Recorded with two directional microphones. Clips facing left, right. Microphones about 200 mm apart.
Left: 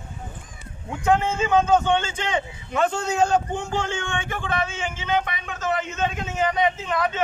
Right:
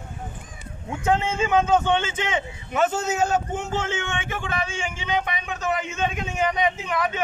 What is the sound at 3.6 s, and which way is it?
A man's voice, 20° right (ahead or behind).